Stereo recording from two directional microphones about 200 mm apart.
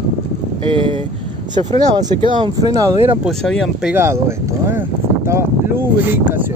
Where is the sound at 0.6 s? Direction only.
25° right (ahead or behind).